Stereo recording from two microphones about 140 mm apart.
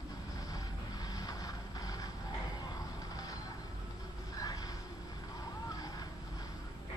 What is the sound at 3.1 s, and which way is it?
Vehicle, 25° left (ahead or behind).